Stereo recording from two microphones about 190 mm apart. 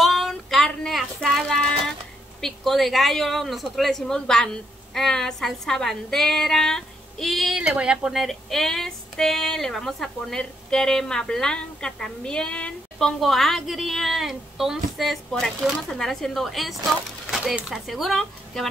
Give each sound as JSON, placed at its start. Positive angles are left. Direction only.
{"t": 0.0, "sound": "child singing", "side_deg": 0}
{"t": 2.4, "sound": "a woman's voice", "side_deg": 0}